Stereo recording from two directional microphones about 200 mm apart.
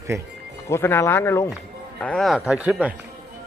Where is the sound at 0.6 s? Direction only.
10° left (ahead or behind); by 2.9 s 5° right (ahead or behind).